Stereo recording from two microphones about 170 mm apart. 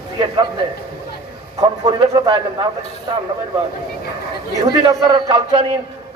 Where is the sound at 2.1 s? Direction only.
30° right (ahead or behind).